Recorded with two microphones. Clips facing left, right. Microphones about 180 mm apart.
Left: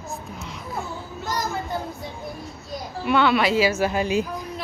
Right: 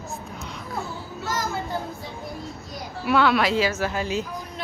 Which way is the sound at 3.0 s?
Centre (ahead or behind).